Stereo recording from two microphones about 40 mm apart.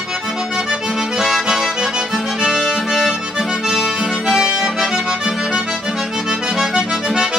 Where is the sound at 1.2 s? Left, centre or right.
Centre.